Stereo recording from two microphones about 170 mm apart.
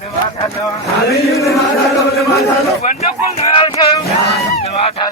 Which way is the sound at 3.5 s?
30° left (ahead or behind).